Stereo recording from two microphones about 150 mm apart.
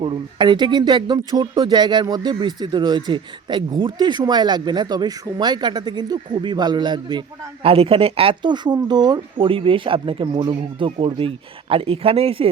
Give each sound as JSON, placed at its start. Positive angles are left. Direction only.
{"t": 0.0, "sound": "speech", "side_deg": -35}